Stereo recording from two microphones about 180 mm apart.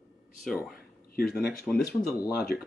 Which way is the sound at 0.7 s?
55° left (ahead or behind).